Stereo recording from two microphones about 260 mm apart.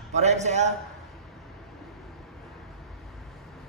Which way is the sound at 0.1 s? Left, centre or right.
Right.